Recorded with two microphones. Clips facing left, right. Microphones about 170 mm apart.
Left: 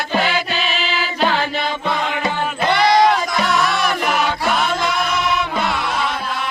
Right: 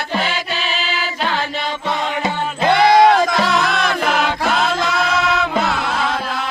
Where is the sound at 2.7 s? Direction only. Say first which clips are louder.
Right 3 dB; 55° right (ahead or behind).